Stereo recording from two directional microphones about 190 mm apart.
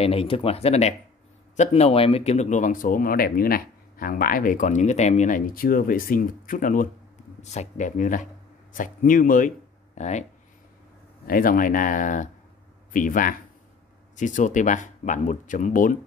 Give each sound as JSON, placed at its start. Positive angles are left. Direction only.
{"t": 0.0, "sound": "speech", "side_deg": 30}
{"t": 11.2, "sound": "speech", "side_deg": 45}